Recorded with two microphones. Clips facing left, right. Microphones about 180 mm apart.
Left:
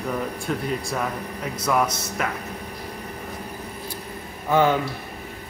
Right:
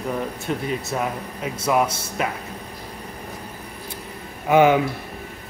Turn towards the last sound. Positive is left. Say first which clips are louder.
# right 4 dB
turn(degrees=-15)  # may be behind; listen again after turning